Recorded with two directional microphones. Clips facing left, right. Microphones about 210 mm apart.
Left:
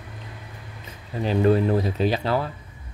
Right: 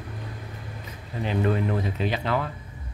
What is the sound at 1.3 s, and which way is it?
Speech, 35° left (ahead or behind).